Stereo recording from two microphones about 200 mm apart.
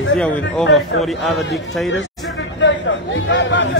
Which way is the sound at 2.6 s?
65° left (ahead or behind).